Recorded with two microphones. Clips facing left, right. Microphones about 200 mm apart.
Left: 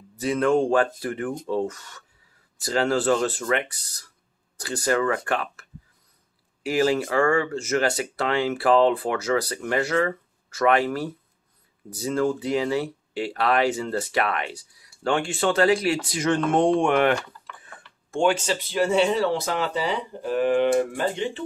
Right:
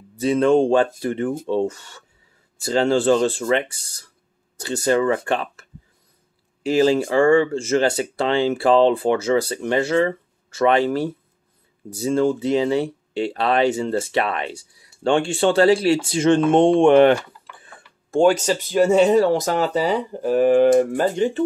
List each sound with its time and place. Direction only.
0.2 s speech: 25° right (ahead or behind); by 21.5 s 45° right (ahead or behind)